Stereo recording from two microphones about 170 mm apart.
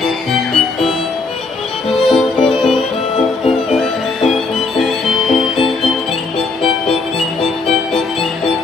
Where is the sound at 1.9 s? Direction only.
Centre (ahead or behind).